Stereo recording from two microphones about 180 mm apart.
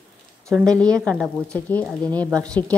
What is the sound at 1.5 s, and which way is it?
A woman's voice, 10° left (ahead or behind).